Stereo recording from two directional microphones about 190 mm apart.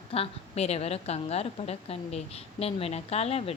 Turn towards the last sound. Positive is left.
turn(degrees=35)  # may be behind; listen again after turning